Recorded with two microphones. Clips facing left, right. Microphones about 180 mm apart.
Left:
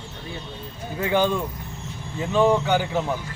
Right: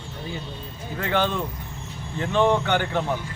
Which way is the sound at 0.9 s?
10° left (ahead or behind).